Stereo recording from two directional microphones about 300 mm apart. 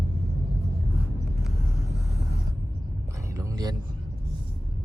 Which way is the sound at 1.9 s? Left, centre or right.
Right.